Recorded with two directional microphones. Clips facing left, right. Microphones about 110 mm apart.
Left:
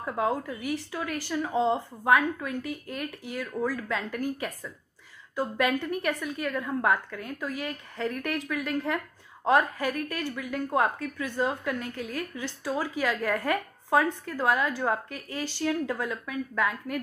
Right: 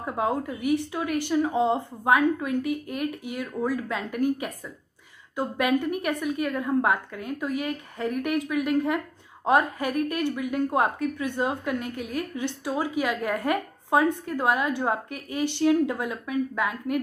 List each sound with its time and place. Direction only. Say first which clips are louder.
0.0 s a woman's voice: right 1 dB; 20° right (ahead or behind)